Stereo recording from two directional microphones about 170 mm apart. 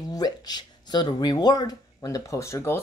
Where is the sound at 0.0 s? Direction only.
20° left (ahead or behind).